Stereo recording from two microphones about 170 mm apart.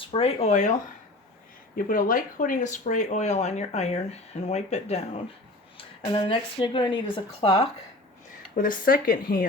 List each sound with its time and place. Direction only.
0.0 s a woman's voice: 35° left (ahead or behind)
8.5 s speech: 55° left (ahead or behind)